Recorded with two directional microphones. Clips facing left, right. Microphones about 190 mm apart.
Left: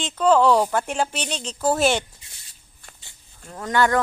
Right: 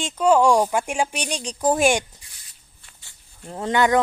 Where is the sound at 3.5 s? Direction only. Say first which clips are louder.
Right 1 dB; 25° right (ahead or behind).